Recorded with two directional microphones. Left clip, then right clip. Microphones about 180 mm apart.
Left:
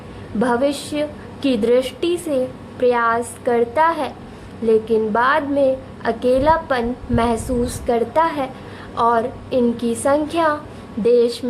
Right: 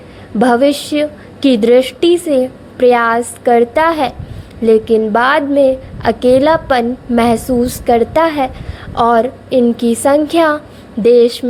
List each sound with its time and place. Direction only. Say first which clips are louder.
0.3 s a woman's voice: right 8 dB; 35° right (ahead or behind)